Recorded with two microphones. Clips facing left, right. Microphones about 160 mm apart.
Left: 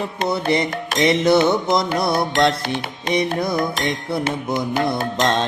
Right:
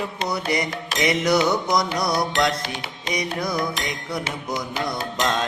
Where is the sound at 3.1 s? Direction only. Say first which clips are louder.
Left 7 dB; 55° left (ahead or behind).